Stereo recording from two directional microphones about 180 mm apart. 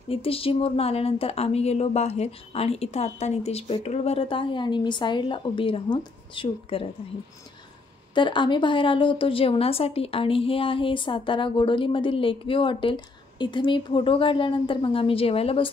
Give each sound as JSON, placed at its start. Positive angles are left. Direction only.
{"t": 0.1, "sound": "speech", "side_deg": 30}
{"t": 8.1, "sound": "speech", "side_deg": 25}